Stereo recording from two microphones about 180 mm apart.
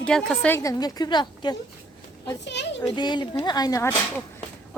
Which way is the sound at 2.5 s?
75° left (ahead or behind).